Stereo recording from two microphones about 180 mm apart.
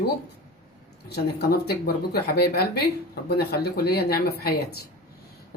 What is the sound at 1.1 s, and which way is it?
Speech, 65° left (ahead or behind).